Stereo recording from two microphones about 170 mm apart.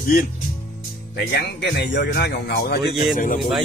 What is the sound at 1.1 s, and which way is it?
Speech, 85° left.